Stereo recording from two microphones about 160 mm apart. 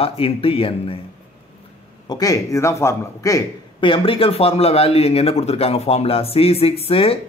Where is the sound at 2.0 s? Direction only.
25° left (ahead or behind).